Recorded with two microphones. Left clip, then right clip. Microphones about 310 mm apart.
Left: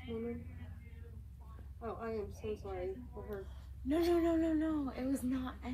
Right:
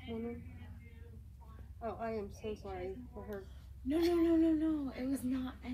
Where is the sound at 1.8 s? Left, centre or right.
Right.